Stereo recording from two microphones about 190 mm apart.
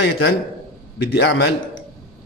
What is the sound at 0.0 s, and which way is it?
A man's voice, 60° left (ahead or behind).